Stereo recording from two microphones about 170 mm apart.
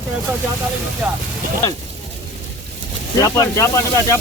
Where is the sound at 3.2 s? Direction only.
15° left (ahead or behind).